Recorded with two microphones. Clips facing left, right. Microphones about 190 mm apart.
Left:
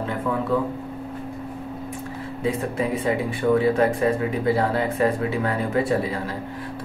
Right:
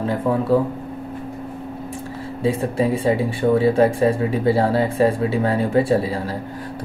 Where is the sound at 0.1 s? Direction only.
35° right (ahead or behind).